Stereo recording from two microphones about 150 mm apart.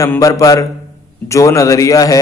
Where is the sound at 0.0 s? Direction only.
20° left (ahead or behind).